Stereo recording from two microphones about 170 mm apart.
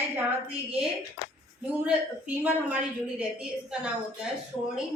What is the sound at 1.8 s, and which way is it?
A woman's voice, 5° right (ahead or behind).